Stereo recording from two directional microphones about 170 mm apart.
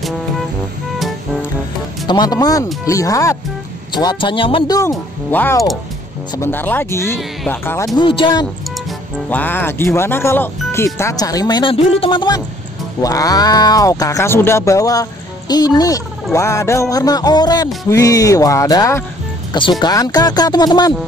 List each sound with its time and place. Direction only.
2.0 s speech: 25° left (ahead or behind)
9.3 s speech: 10° left (ahead or behind)